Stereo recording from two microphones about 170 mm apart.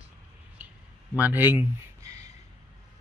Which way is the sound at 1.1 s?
10° right (ahead or behind).